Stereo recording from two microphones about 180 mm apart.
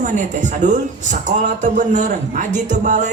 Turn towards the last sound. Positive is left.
turn(degrees=-45)  # may be behind; listen again after turning